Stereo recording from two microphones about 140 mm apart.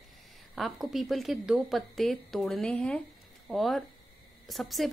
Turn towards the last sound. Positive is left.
turn(degrees=0)  # may be behind; listen again after turning